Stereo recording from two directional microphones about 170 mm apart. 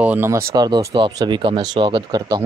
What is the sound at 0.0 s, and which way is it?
Speech, 10° right (ahead or behind).